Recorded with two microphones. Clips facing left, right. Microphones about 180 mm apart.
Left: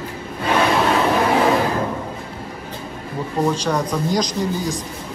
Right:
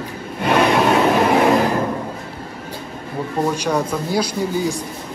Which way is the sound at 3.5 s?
10° right (ahead or behind).